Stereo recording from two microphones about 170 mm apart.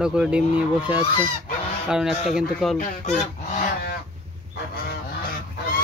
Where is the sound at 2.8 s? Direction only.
45° left (ahead or behind).